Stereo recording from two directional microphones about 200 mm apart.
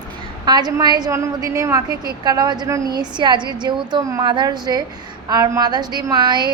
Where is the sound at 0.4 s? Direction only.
20° right (ahead or behind).